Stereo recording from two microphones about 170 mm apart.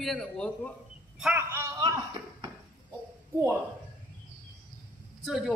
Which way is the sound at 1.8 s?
25° right (ahead or behind).